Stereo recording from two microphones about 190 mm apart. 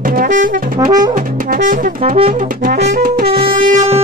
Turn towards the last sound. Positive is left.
turn(degrees=-35)  # may be behind; listen again after turning